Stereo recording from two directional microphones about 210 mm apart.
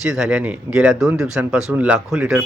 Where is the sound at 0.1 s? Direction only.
Centre (ahead or behind).